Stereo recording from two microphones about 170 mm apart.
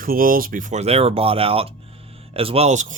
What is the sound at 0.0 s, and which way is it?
Speech, 55° right (ahead or behind).